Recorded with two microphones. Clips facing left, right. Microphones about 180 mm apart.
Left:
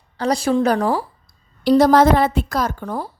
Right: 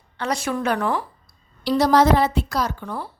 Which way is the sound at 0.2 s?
35° left (ahead or behind).